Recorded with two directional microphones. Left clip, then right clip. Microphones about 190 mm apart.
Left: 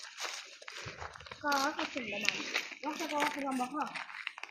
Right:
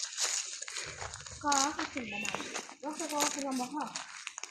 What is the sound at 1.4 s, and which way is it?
Speech, 25° right (ahead or behind).